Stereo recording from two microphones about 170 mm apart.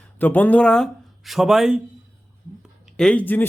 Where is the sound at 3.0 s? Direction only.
5° left (ahead or behind).